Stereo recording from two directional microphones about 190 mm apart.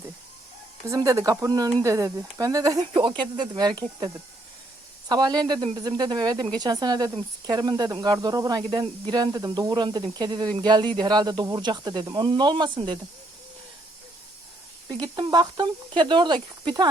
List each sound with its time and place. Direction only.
0.9 s speech: 15° right (ahead or behind)
14.8 s speech: 20° right (ahead or behind)